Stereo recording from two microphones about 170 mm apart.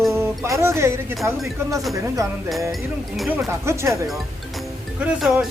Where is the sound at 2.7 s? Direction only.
Centre (ahead or behind).